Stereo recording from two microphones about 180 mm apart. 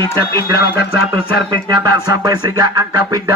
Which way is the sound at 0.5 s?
60° left (ahead or behind).